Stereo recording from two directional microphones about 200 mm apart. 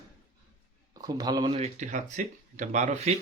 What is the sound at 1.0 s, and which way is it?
Speech, 20° right (ahead or behind).